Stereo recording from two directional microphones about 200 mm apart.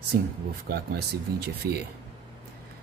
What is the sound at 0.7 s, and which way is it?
Speech, 50° right (ahead or behind).